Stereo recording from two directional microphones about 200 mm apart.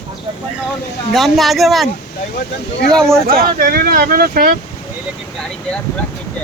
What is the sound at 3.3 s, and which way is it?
Speech, 45° right (ahead or behind).